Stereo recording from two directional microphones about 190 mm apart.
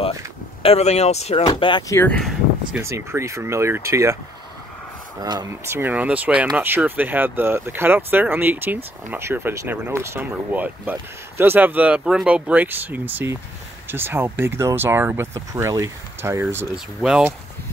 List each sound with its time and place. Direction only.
0.6 s speech: 35° left (ahead or behind)
1.4 s speech: 25° left (ahead or behind); by 2.3 s 5° left (ahead or behind)
2.7 s speech: 15° right (ahead or behind)
5.2 s speech: 20° right (ahead or behind); by 17.3 s 5° right (ahead or behind)